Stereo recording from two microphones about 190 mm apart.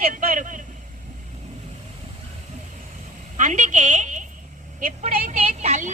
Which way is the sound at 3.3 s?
40° right (ahead or behind).